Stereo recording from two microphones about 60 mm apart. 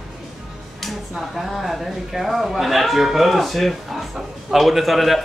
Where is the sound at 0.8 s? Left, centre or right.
Centre.